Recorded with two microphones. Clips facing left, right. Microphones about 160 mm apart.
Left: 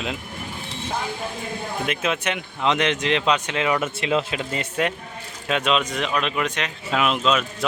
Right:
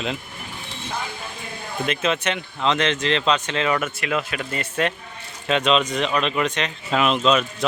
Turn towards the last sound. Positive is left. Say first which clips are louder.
# right 2 dB
turn(degrees=0)  # may be behind; listen again after turning